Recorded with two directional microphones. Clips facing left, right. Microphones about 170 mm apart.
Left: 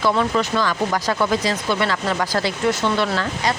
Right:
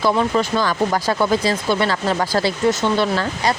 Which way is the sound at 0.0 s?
35° right (ahead or behind).